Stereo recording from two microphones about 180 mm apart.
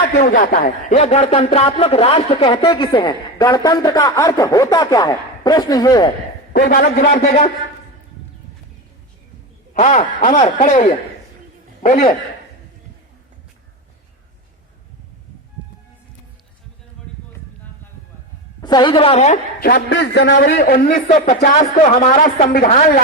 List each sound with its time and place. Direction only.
0.2 s speech: 50° left (ahead or behind); by 6.1 s 20° left (ahead or behind)
6.5 s a man's voice: 50° left (ahead or behind)
7.2 s speech: 35° left (ahead or behind)
9.7 s a man's voice: 40° left (ahead or behind)
18.6 s speech: 25° left (ahead or behind)
19.5 s a man's voice: 55° left (ahead or behind)